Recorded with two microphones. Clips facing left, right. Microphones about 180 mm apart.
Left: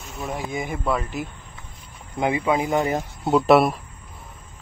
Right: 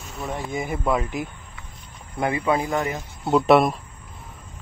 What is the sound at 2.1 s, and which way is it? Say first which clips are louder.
Speech: left 1 dB; 20° left (ahead or behind).